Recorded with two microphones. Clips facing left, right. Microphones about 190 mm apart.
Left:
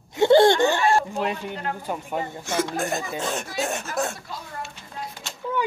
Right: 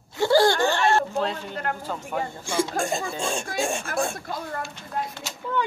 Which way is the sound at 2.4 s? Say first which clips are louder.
Right 1 dB; 10° right (ahead or behind).